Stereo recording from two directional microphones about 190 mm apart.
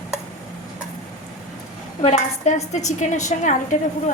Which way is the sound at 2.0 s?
35° left (ahead or behind).